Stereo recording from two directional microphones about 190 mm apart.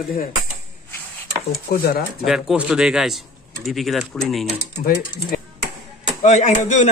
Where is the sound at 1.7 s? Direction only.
50° left (ahead or behind).